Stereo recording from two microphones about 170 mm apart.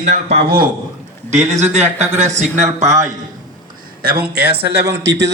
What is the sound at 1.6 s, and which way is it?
Speech, 40° right (ahead or behind).